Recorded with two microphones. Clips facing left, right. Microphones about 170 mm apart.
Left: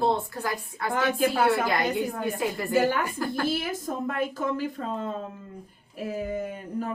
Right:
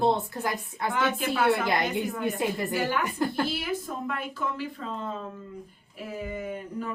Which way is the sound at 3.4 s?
45° left (ahead or behind).